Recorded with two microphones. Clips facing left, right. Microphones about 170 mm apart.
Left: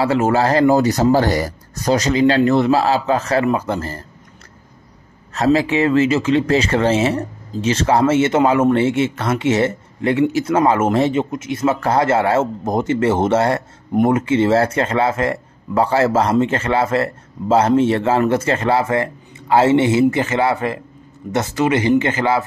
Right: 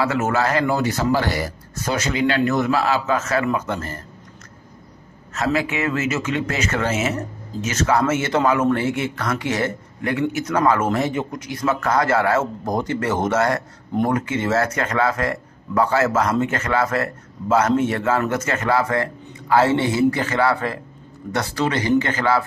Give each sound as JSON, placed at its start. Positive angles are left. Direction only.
{"t": 0.0, "sound": "a man's voice", "side_deg": 30}
{"t": 5.3, "sound": "speech", "side_deg": 35}